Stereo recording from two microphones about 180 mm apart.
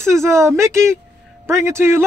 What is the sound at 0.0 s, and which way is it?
Speech, 15° right (ahead or behind).